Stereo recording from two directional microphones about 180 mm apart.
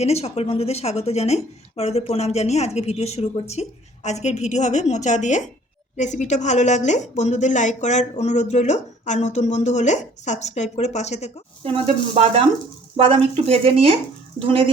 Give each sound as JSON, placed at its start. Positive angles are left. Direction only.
{"t": 0.0, "sound": "speech", "side_deg": 35}
{"t": 11.6, "sound": "sizzle", "side_deg": -30}